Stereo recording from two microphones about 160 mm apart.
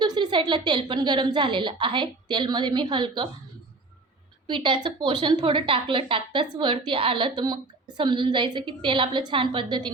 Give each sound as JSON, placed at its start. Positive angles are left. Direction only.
{"t": 0.0, "sound": "a woman's voice", "side_deg": -30}
{"t": 4.4, "sound": "a woman's voice", "side_deg": -30}